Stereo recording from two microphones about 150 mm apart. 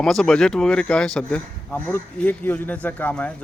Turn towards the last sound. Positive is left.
turn(degrees=10)  # may be behind; listen again after turning